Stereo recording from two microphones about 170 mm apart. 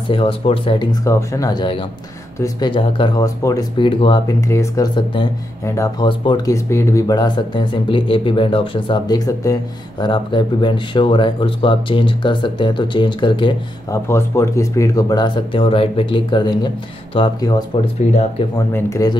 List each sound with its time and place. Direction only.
0.1 s speech: 30° left (ahead or behind)
1.0 s speech: 20° left (ahead or behind)
4.4 s speech: 15° left (ahead or behind)
14.0 s speech: 15° left (ahead or behind)
18.7 s speech: 15° left (ahead or behind)